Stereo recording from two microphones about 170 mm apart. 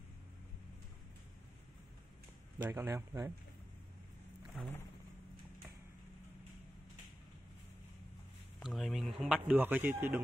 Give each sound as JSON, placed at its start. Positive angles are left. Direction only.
{"t": 2.6, "sound": "speech", "side_deg": -15}
{"t": 4.6, "sound": "speech", "side_deg": 5}
{"t": 8.5, "sound": "speech", "side_deg": 0}